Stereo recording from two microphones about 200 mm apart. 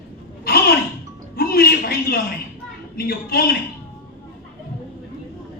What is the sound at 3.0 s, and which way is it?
Speech, 50° left (ahead or behind).